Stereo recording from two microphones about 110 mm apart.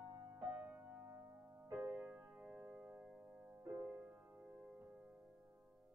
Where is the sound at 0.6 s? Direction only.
15° right (ahead or behind).